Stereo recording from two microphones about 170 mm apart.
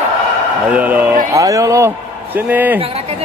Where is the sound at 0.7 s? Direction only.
10° right (ahead or behind).